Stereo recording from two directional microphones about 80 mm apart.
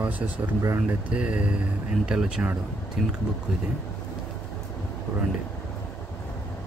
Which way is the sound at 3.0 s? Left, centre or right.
Centre.